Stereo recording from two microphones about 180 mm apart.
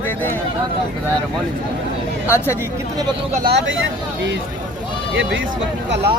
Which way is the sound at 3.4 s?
70° right (ahead or behind).